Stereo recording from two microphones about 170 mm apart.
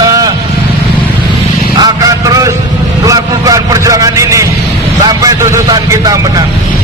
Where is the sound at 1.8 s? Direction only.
20° right (ahead or behind).